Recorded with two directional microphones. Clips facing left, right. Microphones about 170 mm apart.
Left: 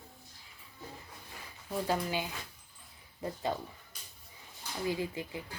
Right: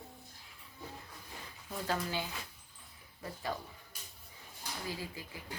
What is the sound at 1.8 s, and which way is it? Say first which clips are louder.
A woman's voice: left 2 dB; 15° left (ahead or behind).